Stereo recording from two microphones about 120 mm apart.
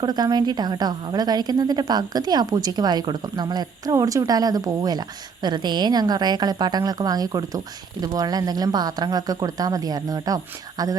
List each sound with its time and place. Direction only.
0.0 s a woman's voice: 35° right (ahead or behind)